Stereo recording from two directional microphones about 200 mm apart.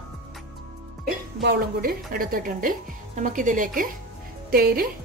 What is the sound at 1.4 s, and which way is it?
A woman's voice, 50° right (ahead or behind).